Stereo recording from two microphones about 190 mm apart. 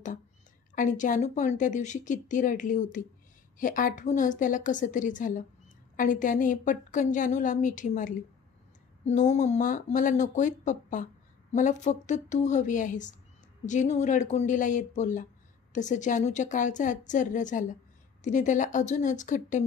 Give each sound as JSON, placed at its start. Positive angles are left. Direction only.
{"t": 0.7, "sound": "a woman's voice", "side_deg": 45}